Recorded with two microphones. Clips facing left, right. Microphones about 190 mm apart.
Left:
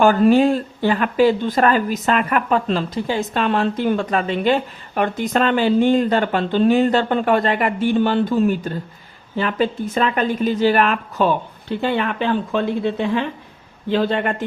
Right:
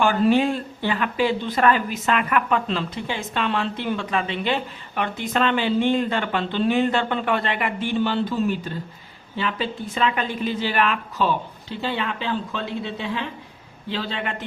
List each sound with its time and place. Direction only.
0.0 s speech: 45° left (ahead or behind)